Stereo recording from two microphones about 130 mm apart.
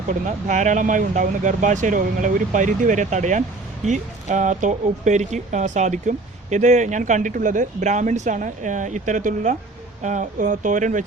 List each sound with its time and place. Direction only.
0.1 s speech: 75° right (ahead or behind)